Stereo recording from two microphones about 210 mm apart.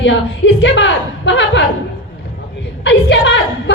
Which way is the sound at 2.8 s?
60° left (ahead or behind).